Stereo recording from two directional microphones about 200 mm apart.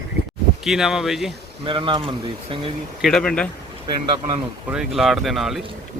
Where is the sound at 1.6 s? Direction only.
25° right (ahead or behind).